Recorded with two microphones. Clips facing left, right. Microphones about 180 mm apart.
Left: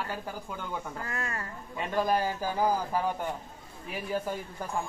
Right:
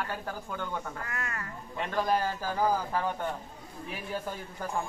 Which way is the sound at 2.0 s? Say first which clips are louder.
Left 1 dB; 10° left (ahead or behind).